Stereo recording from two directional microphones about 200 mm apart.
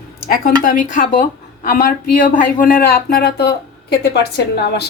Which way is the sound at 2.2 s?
40° left (ahead or behind).